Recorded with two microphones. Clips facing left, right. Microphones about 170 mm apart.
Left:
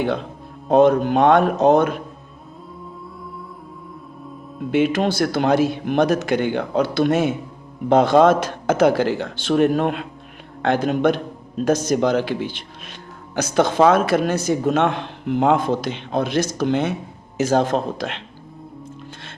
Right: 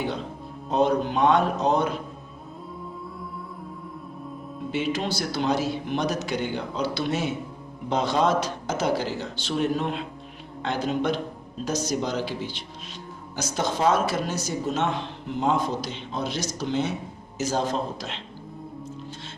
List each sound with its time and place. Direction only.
0.7 s a man's voice: 55° left (ahead or behind)
4.7 s a man's voice: 55° left (ahead or behind)